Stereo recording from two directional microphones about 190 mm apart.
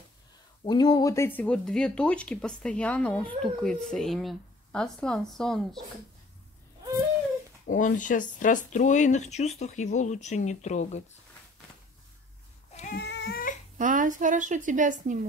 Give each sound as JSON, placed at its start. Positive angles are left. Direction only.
{"t": 0.7, "sound": "speech", "side_deg": 25}
{"t": 7.6, "sound": "speech", "side_deg": 45}
{"t": 12.9, "sound": "a sound", "side_deg": 60}
{"t": 13.7, "sound": "a woman's voice", "side_deg": -45}